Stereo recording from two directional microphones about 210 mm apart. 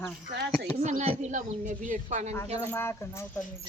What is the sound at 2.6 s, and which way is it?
Speech, 10° left (ahead or behind).